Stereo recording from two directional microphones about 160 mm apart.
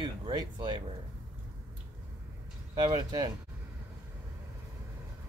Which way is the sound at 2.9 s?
25° right (ahead or behind).